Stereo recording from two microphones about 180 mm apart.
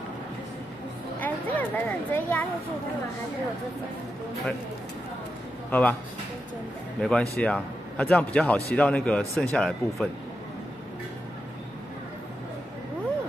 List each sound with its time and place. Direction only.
1.2 s speech: 10° left (ahead or behind)
5.7 s speech: 10° left (ahead or behind)
7.0 s a man's voice: 5° left (ahead or behind)